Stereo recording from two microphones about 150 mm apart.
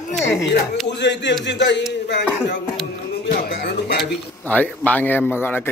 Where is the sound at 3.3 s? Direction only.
75° left (ahead or behind).